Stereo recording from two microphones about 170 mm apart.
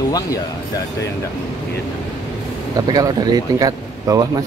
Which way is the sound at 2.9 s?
20° right (ahead or behind).